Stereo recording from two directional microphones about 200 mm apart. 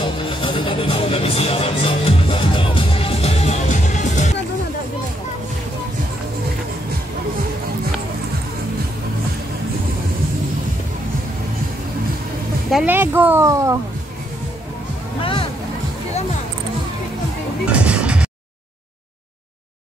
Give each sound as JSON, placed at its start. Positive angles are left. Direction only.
{"t": 0.0, "sound": "music", "side_deg": 25}
{"t": 12.7, "sound": "speech", "side_deg": -10}
{"t": 17.6, "sound": "music", "side_deg": -5}